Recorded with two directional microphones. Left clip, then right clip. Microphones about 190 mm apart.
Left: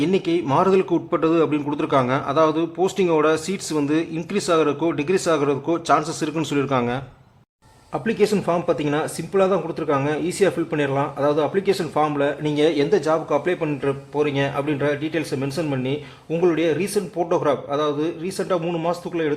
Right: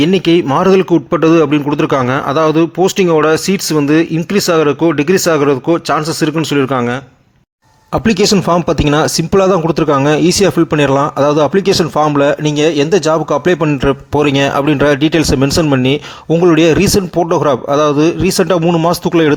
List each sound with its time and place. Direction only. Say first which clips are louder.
0.0 s a man's voice: right 10 dB; 30° right (ahead or behind)
7.9 s speech: right 9 dB; 40° right (ahead or behind)